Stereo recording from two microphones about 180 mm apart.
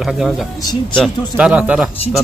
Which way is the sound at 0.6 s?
20° left (ahead or behind).